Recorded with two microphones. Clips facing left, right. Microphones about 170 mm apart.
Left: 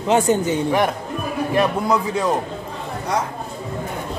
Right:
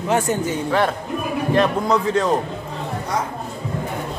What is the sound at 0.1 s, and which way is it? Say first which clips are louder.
A man's voice: left 4 dB; 20° left (ahead or behind).